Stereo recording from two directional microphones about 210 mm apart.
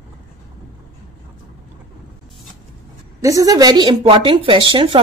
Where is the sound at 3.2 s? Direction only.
15° right (ahead or behind).